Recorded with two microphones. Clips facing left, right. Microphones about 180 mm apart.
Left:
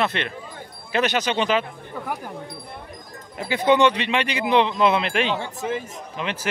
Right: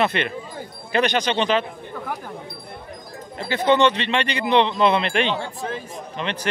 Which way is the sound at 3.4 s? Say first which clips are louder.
Even; 10° left (ahead or behind).